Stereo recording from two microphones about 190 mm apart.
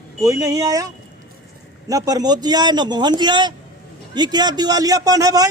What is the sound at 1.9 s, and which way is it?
A man's voice, 20° right (ahead or behind).